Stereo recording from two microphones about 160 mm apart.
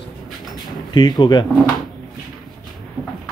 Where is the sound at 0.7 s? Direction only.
30° left (ahead or behind).